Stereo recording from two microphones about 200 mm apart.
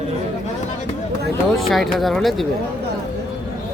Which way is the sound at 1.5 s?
Centre (ahead or behind).